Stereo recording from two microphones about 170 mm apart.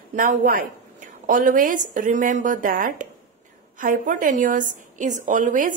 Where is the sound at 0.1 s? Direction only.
55° right (ahead or behind).